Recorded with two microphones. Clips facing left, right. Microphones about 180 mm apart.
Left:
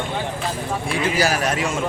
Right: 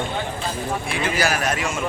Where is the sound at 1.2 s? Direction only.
35° left (ahead or behind).